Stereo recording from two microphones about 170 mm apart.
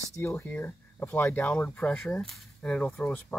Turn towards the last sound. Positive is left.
turn(degrees=10)  # may be behind; listen again after turning